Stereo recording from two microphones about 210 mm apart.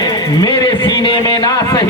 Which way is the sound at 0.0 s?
20° left (ahead or behind).